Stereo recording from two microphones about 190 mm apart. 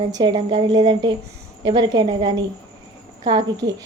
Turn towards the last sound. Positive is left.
turn(degrees=-25)  # may be behind; listen again after turning